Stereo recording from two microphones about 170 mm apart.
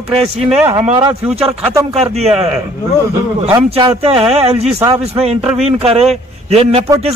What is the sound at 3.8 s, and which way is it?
Speech, 30° right (ahead or behind).